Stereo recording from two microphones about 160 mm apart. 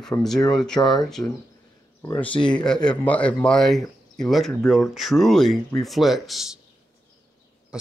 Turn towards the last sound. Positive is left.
turn(degrees=-5)  # may be behind; listen again after turning